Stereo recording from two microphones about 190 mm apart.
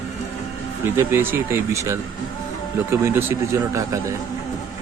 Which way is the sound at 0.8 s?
15° right (ahead or behind).